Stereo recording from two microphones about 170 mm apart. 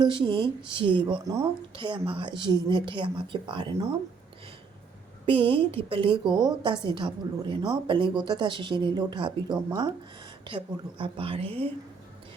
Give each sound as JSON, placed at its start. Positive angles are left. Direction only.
{"t": 0.0, "sound": "a woman's voice", "side_deg": -30}
{"t": 5.2, "sound": "a woman's voice", "side_deg": -30}